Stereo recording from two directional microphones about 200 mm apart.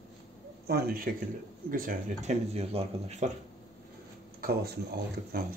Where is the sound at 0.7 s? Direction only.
50° right (ahead or behind); by 3.3 s 30° right (ahead or behind).